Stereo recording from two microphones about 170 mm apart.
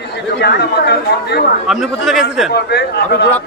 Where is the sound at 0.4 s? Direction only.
75° left (ahead or behind).